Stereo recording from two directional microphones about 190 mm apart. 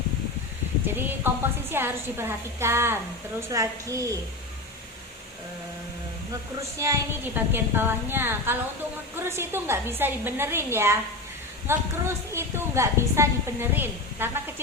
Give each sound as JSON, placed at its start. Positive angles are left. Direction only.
{"t": 0.9, "sound": "a sound", "side_deg": -10}
{"t": 1.7, "sound": "a woman's voice", "side_deg": -10}
{"t": 6.6, "sound": "a woman's voice", "side_deg": -15}